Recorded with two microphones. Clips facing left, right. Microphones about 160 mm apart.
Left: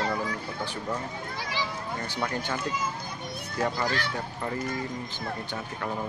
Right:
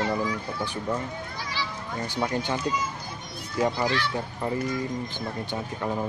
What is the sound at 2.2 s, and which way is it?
Speech, 20° right (ahead or behind).